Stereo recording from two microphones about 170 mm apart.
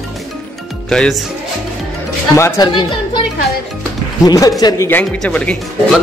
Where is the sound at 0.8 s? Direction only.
5° left (ahead or behind).